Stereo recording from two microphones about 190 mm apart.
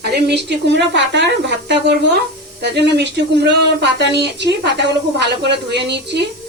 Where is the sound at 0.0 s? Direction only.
60° right (ahead or behind).